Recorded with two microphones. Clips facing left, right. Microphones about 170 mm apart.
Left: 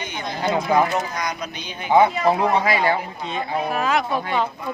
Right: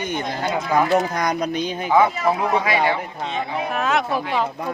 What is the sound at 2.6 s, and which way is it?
Speech, 35° left (ahead or behind).